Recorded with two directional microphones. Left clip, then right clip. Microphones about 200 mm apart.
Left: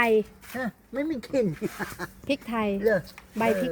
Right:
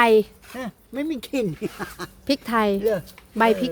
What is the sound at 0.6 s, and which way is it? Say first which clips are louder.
Speech: right 1 dB; 55° right (ahead or behind).